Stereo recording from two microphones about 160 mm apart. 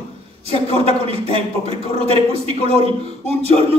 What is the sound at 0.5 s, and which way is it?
A man's voice, 35° right (ahead or behind).